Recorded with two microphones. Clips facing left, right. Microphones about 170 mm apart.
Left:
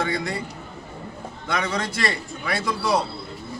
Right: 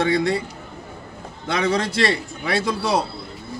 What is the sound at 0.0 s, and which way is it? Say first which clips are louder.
Speech: right 6 dB; 30° right (ahead or behind).